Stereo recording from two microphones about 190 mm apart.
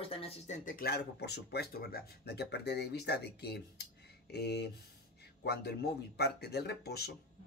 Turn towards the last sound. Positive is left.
turn(degrees=60)  # may be behind; listen again after turning